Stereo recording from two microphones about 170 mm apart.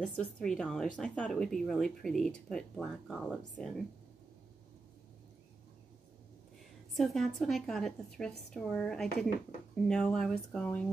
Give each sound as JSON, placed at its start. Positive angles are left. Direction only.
{"t": 0.0, "sound": "speech", "side_deg": 5}
{"t": 7.0, "sound": "speech", "side_deg": 0}